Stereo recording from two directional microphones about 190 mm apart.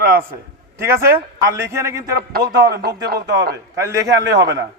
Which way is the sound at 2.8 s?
60° right (ahead or behind).